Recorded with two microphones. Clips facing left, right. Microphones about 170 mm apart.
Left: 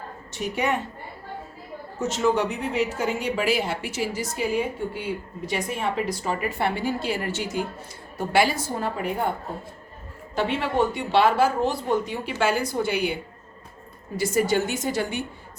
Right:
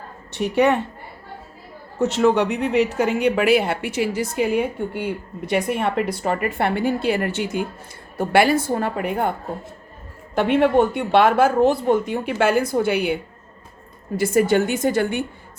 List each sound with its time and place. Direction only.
0.3 s speech: 65° right (ahead or behind)
2.0 s speech: 65° right (ahead or behind)
10.3 s speech: 55° right (ahead or behind)
14.2 s speech: 55° right (ahead or behind)